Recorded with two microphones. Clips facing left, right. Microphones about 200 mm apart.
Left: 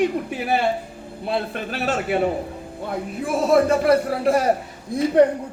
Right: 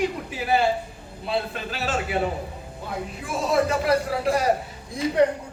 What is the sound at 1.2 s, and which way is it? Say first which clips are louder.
Speech: left 2 dB; 55° left (ahead or behind).